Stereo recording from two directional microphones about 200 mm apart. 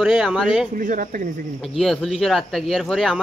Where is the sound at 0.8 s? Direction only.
40° right (ahead or behind).